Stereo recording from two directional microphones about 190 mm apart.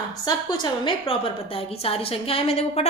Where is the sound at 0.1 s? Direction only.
20° left (ahead or behind).